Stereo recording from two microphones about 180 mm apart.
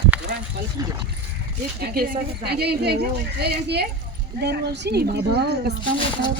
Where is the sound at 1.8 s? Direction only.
55° right (ahead or behind).